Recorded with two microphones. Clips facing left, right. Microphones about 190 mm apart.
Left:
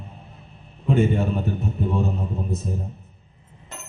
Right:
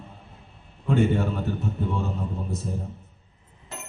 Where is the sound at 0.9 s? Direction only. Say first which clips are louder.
Left 2 dB; 15° left (ahead or behind).